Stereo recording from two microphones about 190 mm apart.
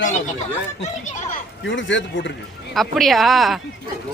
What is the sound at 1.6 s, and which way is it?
Speech, 75° left (ahead or behind).